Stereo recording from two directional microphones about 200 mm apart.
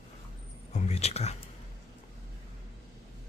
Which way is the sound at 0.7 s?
35° left (ahead or behind).